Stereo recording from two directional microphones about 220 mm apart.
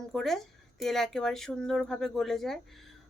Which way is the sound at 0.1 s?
Centre (ahead or behind).